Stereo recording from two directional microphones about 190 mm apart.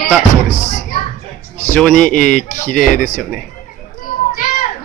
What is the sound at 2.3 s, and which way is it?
Speech, 40° left (ahead or behind).